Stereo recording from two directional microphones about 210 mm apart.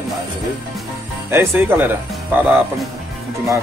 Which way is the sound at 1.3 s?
10° right (ahead or behind).